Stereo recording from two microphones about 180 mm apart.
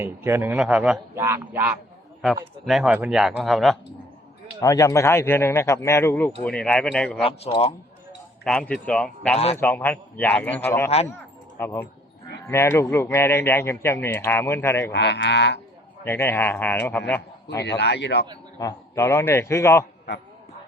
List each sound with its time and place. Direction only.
0.0 s a man's voice: 10° right (ahead or behind)
4.6 s speech: 20° left (ahead or behind)
7.2 s speech: 35° left (ahead or behind)
8.4 s speech: 5° left (ahead or behind)
14.9 s livestock: 75° left (ahead or behind)
16.0 s a man's voice: 15° left (ahead or behind)
17.6 s livestock: 70° left (ahead or behind)
18.6 s speech: 15° left (ahead or behind)